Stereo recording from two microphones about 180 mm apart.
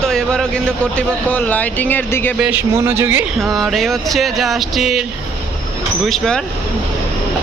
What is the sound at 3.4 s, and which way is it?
Speech, centre (ahead or behind).